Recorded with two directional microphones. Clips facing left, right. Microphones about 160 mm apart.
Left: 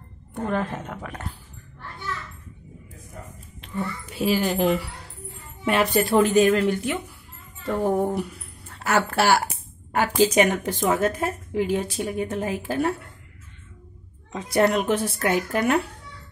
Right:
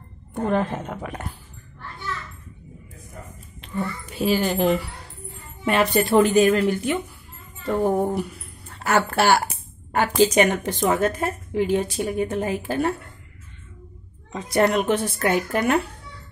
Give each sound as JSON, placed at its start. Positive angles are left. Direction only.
{"t": 0.3, "sound": "a woman's voice", "side_deg": -25}
{"t": 4.0, "sound": "a woman's voice", "side_deg": 0}
{"t": 14.3, "sound": "a woman's voice", "side_deg": 5}